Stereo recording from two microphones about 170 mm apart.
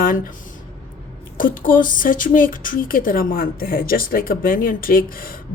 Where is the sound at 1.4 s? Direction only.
55° left (ahead or behind).